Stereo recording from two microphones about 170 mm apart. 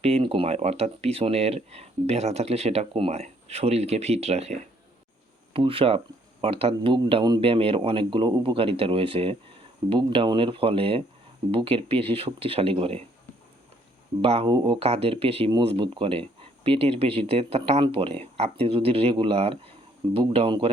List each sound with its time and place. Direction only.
0.0 s speech: 35° right (ahead or behind)
14.2 s speech: 35° right (ahead or behind)